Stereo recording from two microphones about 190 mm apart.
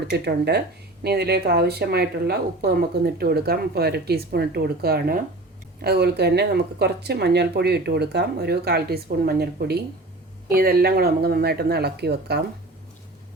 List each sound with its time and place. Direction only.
0.1 s speech: 60° right (ahead or behind)